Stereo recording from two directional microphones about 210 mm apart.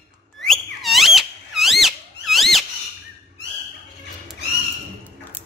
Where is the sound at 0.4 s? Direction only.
Centre (ahead or behind).